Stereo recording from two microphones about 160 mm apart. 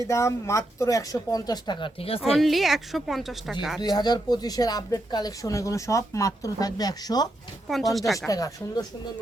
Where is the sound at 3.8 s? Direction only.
25° left (ahead or behind).